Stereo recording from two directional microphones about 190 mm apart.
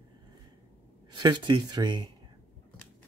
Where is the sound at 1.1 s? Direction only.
25° right (ahead or behind).